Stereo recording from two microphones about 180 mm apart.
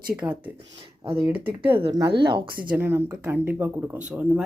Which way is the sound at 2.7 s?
15° right (ahead or behind).